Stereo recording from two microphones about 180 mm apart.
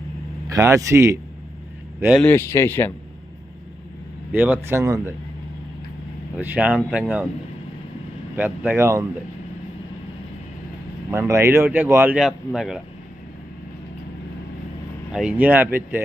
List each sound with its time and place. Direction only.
0.5 s speech: 20° right (ahead or behind)
2.1 s speech: 10° left (ahead or behind)
4.3 s speech: 10° right (ahead or behind)
6.3 s speech: 10° right (ahead or behind)
8.4 s speech: 10° right (ahead or behind)
11.1 s speech: 15° right (ahead or behind)
15.1 s speech: 5° right (ahead or behind)